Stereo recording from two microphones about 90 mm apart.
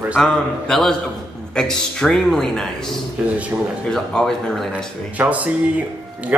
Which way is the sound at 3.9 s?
5° left (ahead or behind).